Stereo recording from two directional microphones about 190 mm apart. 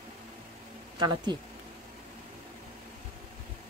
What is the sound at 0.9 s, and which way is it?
Speech, 25° right (ahead or behind).